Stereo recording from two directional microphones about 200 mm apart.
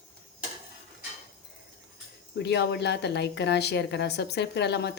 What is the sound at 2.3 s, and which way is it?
A woman's voice, 55° left (ahead or behind).